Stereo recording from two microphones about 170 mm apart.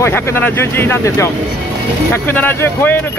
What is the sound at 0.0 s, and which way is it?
Speech, 15° left (ahead or behind).